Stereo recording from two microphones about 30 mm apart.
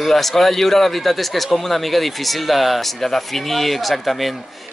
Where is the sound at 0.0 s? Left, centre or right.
Centre.